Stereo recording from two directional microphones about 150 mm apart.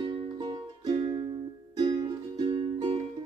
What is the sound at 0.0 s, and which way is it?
Music, 35° right (ahead or behind).